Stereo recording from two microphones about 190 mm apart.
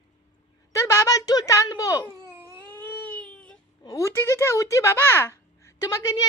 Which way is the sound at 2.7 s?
10° left (ahead or behind).